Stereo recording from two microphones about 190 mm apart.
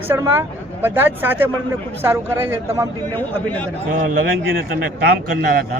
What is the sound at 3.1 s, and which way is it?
Speech, 10° left (ahead or behind).